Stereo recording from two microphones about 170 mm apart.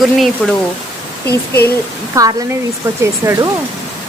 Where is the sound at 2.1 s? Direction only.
20° right (ahead or behind).